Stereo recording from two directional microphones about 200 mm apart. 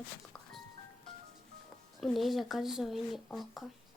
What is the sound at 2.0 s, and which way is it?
Speech, centre (ahead or behind).